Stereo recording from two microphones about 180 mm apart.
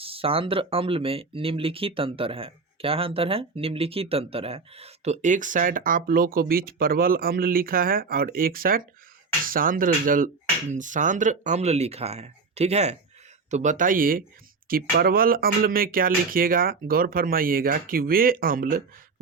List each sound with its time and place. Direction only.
0.0 s speech: 30° right (ahead or behind); by 18.8 s 55° right (ahead or behind)